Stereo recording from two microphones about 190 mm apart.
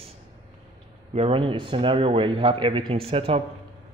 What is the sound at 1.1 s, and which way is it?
A man's voice, 30° right (ahead or behind).